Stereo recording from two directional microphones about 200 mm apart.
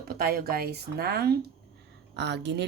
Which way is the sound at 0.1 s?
50° right (ahead or behind).